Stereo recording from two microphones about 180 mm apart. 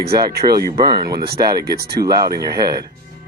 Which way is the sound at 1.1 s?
60° right (ahead or behind).